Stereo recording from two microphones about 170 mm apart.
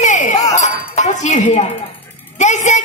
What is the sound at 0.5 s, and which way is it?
A woman's voice, 45° left (ahead or behind).